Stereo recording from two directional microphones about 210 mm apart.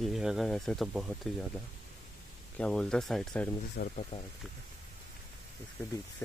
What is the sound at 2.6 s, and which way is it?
Speech, 5° left (ahead or behind).